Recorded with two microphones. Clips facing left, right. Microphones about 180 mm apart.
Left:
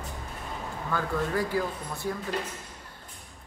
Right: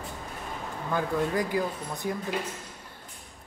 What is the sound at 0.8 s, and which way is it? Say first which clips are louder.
Speech: right 2 dB; 15° right (ahead or behind).